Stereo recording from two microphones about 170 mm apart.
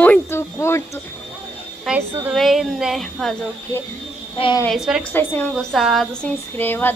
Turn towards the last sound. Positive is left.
turn(degrees=10)  # may be behind; listen again after turning